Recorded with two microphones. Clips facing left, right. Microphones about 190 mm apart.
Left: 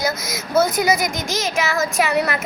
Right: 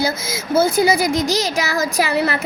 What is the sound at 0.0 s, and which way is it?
A woman's voice, 30° right (ahead or behind).